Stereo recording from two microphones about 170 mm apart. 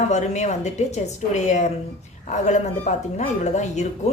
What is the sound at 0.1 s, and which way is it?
A woman's voice, 40° left (ahead or behind).